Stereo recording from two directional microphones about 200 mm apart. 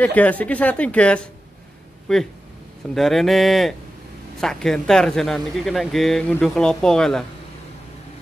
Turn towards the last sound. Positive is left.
turn(degrees=5)  # may be behind; listen again after turning